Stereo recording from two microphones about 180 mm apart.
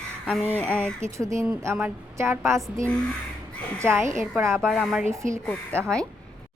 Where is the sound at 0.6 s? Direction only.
10° right (ahead or behind).